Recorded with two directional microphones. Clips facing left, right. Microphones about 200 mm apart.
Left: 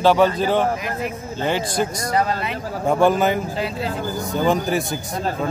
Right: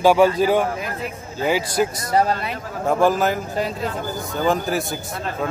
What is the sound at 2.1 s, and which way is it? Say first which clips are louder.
Speech: right 2 dB; 35° right (ahead or behind).